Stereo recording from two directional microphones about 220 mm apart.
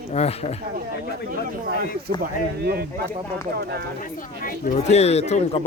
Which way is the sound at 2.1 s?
45° right (ahead or behind).